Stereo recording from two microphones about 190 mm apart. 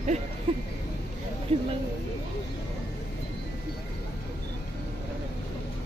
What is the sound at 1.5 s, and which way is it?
Speech, 30° right (ahead or behind).